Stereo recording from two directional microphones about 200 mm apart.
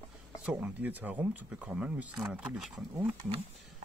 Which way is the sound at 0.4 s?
5° right (ahead or behind).